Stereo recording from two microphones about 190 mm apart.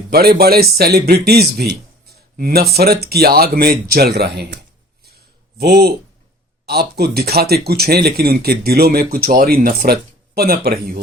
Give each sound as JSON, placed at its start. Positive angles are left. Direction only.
{"t": 0.1, "sound": "speech", "side_deg": -55}